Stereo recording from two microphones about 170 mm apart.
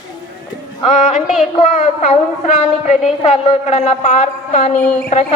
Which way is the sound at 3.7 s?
40° left (ahead or behind).